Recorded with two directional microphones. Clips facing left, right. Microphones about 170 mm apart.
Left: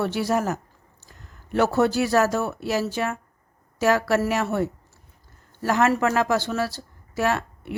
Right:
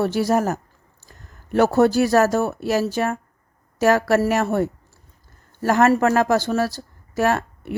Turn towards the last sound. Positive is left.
turn(degrees=-45)  # may be behind; listen again after turning